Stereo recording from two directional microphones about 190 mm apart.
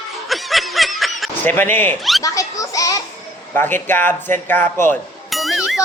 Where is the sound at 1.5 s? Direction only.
10° left (ahead or behind).